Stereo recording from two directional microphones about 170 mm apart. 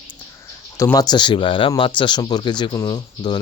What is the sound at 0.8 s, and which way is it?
Speech, 20° left (ahead or behind).